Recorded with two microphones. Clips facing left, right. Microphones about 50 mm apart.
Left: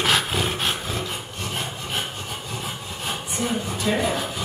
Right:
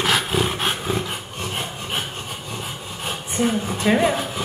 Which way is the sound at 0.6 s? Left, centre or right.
Centre.